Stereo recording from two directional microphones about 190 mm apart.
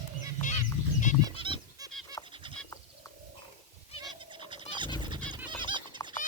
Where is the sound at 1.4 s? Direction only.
25° right (ahead or behind).